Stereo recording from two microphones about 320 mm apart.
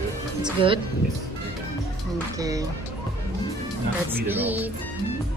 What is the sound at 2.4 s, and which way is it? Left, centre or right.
Speech, centre.